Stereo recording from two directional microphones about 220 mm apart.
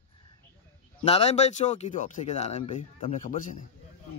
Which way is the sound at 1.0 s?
30° left (ahead or behind).